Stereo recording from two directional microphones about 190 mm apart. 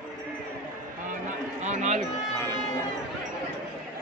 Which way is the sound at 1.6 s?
40° right (ahead or behind).